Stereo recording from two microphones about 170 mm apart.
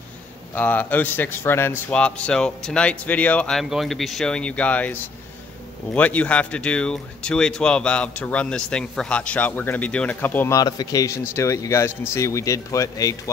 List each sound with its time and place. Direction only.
0.6 s speech: 10° left (ahead or behind)
5.9 s speech: 10° left (ahead or behind)